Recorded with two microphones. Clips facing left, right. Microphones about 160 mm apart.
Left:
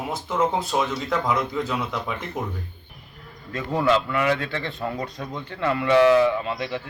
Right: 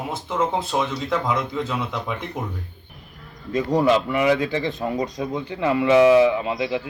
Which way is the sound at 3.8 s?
15° right (ahead or behind).